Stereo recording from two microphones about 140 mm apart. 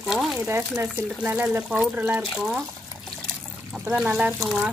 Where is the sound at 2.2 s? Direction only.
5° right (ahead or behind).